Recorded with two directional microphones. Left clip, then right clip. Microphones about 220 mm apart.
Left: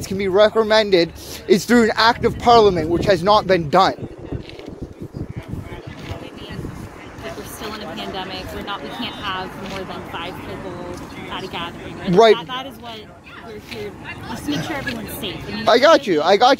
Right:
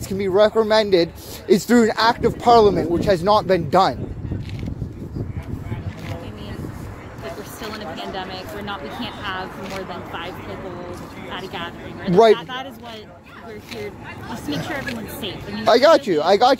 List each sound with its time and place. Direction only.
0.4 s speech: 20° right (ahead or behind)
7.6 s a sound: 20° right (ahead or behind)
8.0 s a sound: centre (ahead or behind)
12.1 s speech: 15° right (ahead or behind)
14.3 s speech: 60° right (ahead or behind)
15.6 s speech: 25° right (ahead or behind)